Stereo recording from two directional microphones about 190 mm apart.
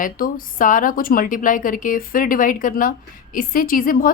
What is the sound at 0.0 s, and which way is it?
A woman's voice, 45° left (ahead or behind).